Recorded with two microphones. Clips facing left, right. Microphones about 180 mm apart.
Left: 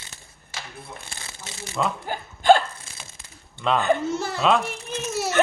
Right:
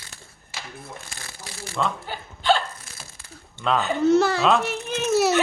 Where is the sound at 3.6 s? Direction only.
Centre (ahead or behind).